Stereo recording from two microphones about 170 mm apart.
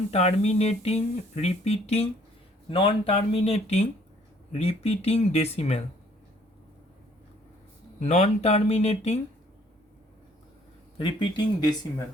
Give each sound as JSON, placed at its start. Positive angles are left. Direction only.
{"t": 0.1, "sound": "speech", "side_deg": 40}
{"t": 7.9, "sound": "speech", "side_deg": 40}
{"t": 10.9, "sound": "speech", "side_deg": 30}